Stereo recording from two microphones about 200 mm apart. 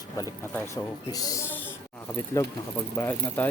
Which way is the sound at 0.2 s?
10° left (ahead or behind).